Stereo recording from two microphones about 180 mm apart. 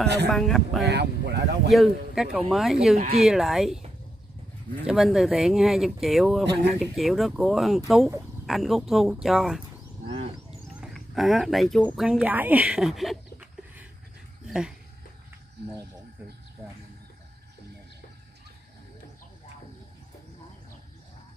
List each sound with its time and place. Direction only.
0.3 s speech: centre (ahead or behind)
0.8 s speech: 70° right (ahead or behind)
1.7 s speech: centre (ahead or behind)
3.0 s speech: 35° right (ahead or behind)
3.3 s speech: centre (ahead or behind)
4.8 s speech: centre (ahead or behind)
10.0 s bird: 30° right (ahead or behind)
10.7 s speech: centre (ahead or behind)
12.1 s speech: 5° right (ahead or behind)
14.4 s dog: 5° right (ahead or behind)